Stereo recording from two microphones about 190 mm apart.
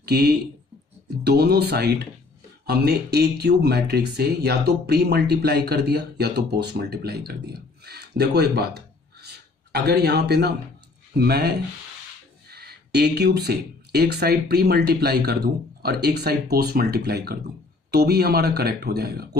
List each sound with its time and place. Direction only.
0.0 s speech: 60° right (ahead or behind)